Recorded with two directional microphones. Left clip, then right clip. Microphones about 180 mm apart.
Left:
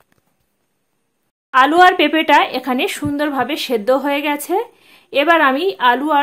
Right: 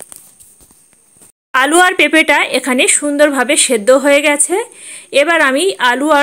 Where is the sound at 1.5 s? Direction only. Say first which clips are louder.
Even; 25° right (ahead or behind).